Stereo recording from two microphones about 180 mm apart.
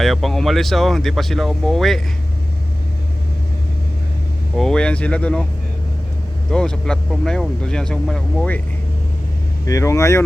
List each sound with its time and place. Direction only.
0.0 s speech: centre (ahead or behind)
4.5 s speech: 5° left (ahead or behind)
6.5 s speech: 5° left (ahead or behind)
9.6 s speech: 15° left (ahead or behind)